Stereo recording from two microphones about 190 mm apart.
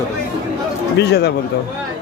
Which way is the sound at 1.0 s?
60° left (ahead or behind).